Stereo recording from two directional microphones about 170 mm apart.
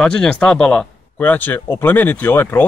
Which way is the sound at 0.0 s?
5° left (ahead or behind).